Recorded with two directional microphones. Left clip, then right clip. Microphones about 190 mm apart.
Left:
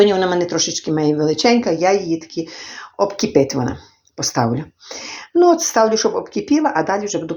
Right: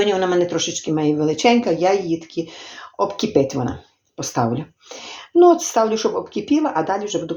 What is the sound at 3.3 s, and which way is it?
Speech, 25° left (ahead or behind).